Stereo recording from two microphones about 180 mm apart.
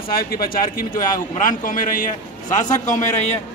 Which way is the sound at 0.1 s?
55° left (ahead or behind).